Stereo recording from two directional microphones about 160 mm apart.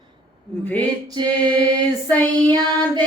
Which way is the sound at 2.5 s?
25° right (ahead or behind).